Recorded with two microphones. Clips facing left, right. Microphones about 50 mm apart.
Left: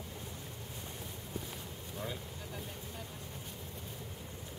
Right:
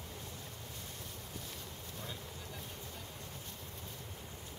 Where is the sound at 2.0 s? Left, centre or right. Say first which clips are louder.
Left 6 dB; centre.